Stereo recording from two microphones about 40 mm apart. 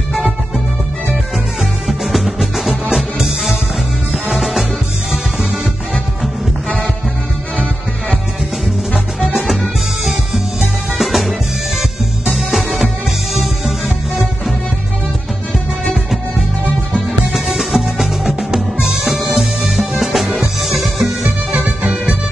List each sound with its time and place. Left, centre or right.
1.6 s music: centre
8.6 s music: centre
15.9 s music: centre